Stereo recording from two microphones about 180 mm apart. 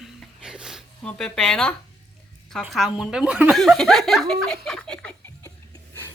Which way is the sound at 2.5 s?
Centre (ahead or behind).